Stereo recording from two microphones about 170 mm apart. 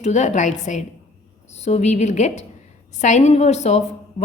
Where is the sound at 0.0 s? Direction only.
45° left (ahead or behind).